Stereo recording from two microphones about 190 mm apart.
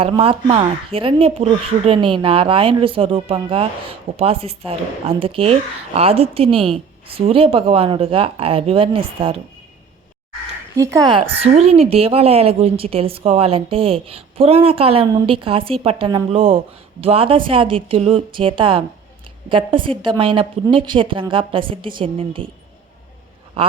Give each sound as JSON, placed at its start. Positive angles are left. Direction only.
{"t": 0.0, "sound": "speech", "side_deg": -30}
{"t": 10.8, "sound": "speech", "side_deg": -20}